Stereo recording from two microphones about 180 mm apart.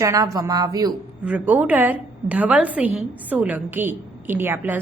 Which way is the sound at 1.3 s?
10° right (ahead or behind).